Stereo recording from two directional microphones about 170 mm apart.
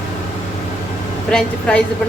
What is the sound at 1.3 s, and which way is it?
Speech, 5° left (ahead or behind).